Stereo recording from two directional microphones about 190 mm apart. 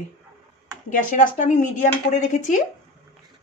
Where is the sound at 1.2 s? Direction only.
40° left (ahead or behind).